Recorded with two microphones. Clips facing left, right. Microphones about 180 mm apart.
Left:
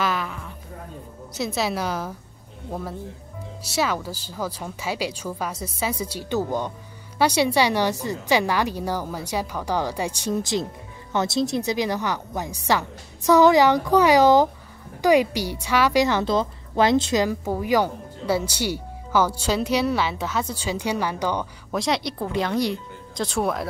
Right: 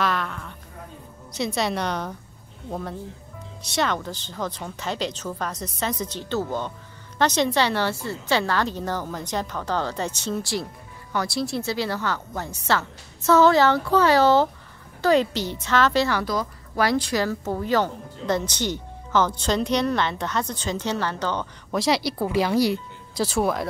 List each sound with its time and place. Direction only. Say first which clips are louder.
0.0 s a sound: even; centre (ahead or behind)
1.3 s a woman's voice: even; 5° left (ahead or behind)
21.7 s speech: right 2 dB; centre (ahead or behind)